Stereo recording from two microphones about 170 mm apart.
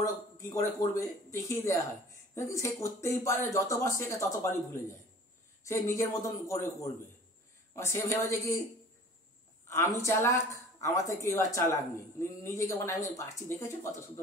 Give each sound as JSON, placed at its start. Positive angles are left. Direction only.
{"t": 0.4, "sound": "a man's voice", "side_deg": 20}
{"t": 9.7, "sound": "speech", "side_deg": 15}